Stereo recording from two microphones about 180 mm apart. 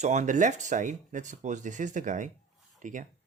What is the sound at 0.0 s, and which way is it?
Speech, 40° right (ahead or behind).